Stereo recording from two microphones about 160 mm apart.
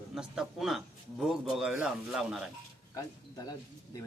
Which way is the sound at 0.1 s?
5° right (ahead or behind).